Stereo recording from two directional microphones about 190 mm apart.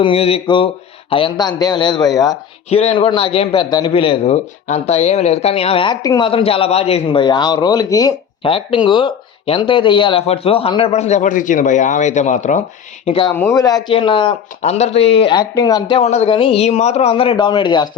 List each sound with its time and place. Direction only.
0.0 s a man's voice: 30° left (ahead or behind)
2.6 s a man's voice: 30° left (ahead or behind)
13.1 s a man's voice: 30° left (ahead or behind)
13.3 s a man's voice: 15° left (ahead or behind)